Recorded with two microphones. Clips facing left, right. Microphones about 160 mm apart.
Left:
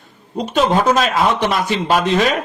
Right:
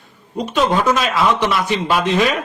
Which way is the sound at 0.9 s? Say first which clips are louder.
Left 1 dB; 45° left (ahead or behind).